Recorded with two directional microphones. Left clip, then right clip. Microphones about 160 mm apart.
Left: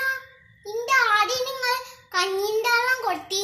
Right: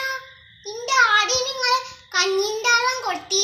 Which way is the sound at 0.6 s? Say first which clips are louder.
Right 2 dB; 25° left (ahead or behind).